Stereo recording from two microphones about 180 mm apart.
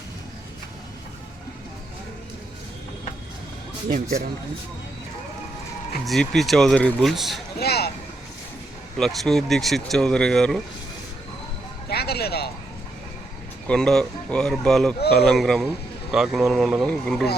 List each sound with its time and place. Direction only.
6.1 s speech: centre (ahead or behind)
7.6 s vehicle: 60° left (ahead or behind)
9.0 s speech: centre (ahead or behind)
11.9 s music: 60° left (ahead or behind)
13.7 s speech: 5° left (ahead or behind)